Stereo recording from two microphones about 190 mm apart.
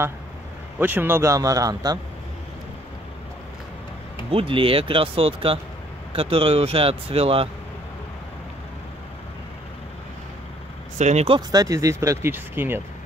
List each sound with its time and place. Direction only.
0.7 s speech: 10° right (ahead or behind)
4.3 s speech: 30° right (ahead or behind)
11.0 s speech: 35° right (ahead or behind); by 12.8 s 10° right (ahead or behind)